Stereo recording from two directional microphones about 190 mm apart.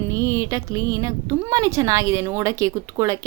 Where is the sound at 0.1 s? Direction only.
15° right (ahead or behind).